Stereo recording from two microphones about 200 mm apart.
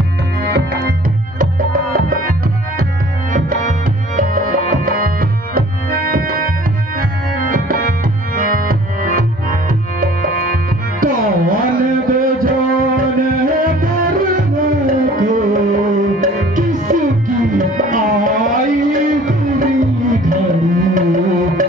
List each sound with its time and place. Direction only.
0.4 s music: 50° right (ahead or behind)